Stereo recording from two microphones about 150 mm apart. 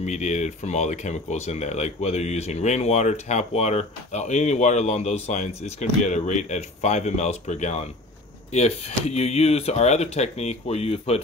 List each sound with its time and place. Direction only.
0.0 s speech: 50° left (ahead or behind)